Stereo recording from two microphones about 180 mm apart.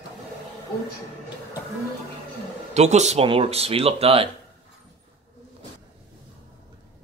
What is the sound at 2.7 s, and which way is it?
Speech, 40° right (ahead or behind).